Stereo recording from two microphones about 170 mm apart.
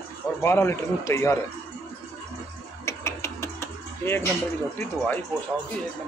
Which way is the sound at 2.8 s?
15° left (ahead or behind).